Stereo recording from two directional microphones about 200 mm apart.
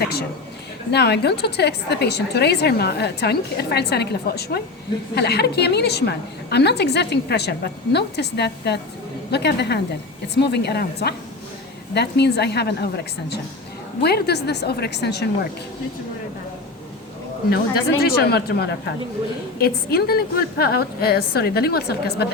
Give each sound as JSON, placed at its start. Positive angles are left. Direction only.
{"t": 0.0, "sound": "a man's voice", "side_deg": 50}
{"t": 18.0, "sound": "a woman's voice", "side_deg": 55}